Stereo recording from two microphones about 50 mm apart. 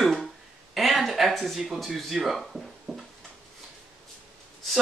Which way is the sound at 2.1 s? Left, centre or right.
Centre.